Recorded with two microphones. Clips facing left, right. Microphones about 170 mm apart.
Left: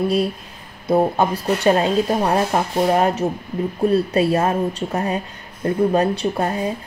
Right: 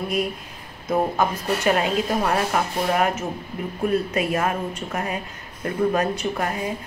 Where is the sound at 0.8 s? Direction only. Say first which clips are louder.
Left 5 dB; 35° left (ahead or behind).